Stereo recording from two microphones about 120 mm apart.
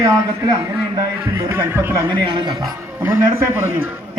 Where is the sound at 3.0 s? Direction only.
20° right (ahead or behind).